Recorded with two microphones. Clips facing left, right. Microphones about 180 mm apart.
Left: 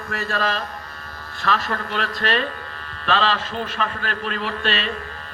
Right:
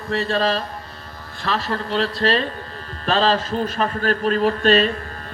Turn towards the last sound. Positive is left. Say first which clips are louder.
# right 9 dB
turn(degrees=-40)  # may be behind; listen again after turning